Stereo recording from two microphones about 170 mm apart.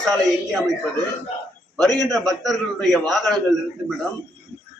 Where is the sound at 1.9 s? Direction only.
20° right (ahead or behind).